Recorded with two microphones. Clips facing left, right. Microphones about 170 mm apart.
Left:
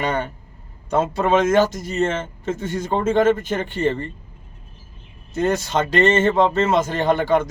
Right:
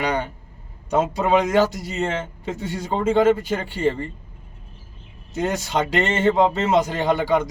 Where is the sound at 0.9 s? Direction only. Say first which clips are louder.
Left 1 dB; 15° right (ahead or behind).